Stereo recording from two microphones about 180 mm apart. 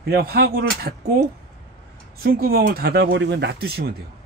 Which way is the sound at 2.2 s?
55° right (ahead or behind).